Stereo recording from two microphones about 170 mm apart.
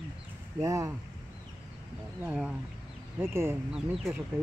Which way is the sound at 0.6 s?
20° right (ahead or behind).